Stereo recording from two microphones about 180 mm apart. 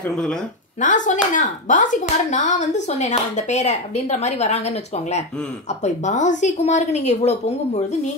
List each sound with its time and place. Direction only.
0.1 s speech: 5° left (ahead or behind)
0.7 s a woman's voice: 45° left (ahead or behind)